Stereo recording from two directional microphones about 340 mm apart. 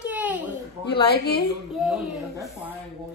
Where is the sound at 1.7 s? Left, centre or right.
Centre.